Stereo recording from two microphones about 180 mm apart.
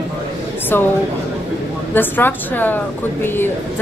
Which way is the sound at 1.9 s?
10° left (ahead or behind).